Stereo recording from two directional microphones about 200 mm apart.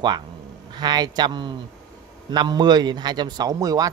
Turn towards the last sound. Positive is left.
turn(degrees=-15)  # may be behind; listen again after turning